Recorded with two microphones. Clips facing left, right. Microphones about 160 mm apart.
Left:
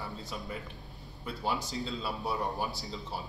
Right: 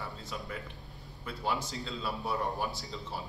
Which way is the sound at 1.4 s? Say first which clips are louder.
Left 1 dB; centre (ahead or behind).